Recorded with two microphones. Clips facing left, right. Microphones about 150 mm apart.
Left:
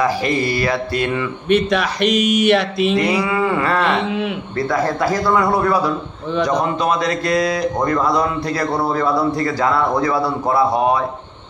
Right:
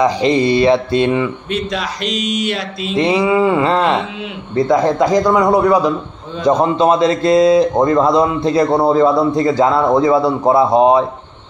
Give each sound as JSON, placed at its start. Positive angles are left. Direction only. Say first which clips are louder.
{"t": 0.0, "sound": "speech", "louder": "right 5 dB", "side_deg": -20}
{"t": 1.7, "sound": "speech", "louder": "left 4 dB", "side_deg": 65}
{"t": 3.0, "sound": "a man's voice", "louder": "right 5 dB", "side_deg": -20}